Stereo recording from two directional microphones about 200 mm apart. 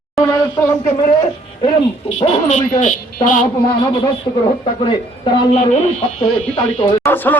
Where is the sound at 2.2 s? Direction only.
35° left (ahead or behind).